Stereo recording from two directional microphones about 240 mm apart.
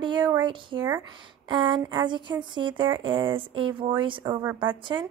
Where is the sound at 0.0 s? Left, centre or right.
Centre.